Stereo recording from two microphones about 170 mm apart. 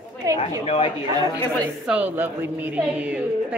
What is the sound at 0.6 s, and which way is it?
Speech, 35° left (ahead or behind).